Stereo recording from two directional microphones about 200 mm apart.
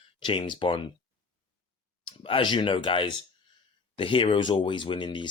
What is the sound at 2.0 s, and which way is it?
Speech, 25° left (ahead or behind).